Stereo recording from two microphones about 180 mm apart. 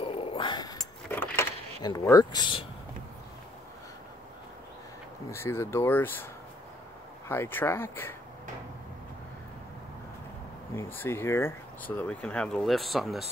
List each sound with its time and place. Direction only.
0.0 s a sound: 30° left (ahead or behind)
1.1 s keys jangling: 10° left (ahead or behind)
1.8 s speech: 20° left (ahead or behind)
5.3 s speech: 15° left (ahead or behind)
7.2 s speech: 10° left (ahead or behind)
10.8 s speech: 10° left (ahead or behind)